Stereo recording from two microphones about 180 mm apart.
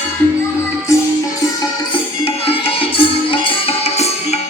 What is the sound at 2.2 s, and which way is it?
Music, 30° left (ahead or behind).